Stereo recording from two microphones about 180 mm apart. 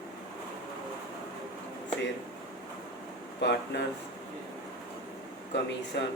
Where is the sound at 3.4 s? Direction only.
75° left (ahead or behind).